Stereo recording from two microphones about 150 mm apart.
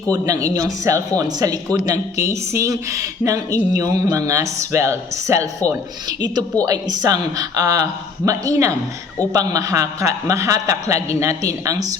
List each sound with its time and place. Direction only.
0.1 s speech: 20° right (ahead or behind)